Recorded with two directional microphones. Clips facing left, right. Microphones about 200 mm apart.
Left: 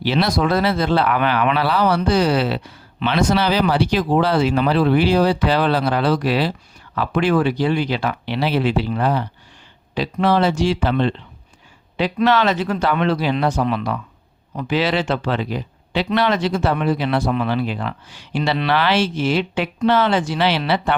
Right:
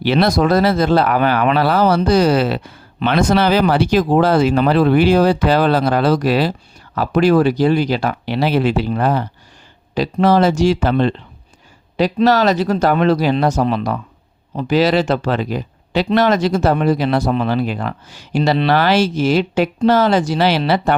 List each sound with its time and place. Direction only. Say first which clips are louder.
0.0 s speech: right 4 dB; 55° right (ahead or behind)